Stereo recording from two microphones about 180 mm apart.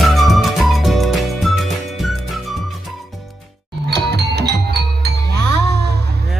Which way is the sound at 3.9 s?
65° right (ahead or behind).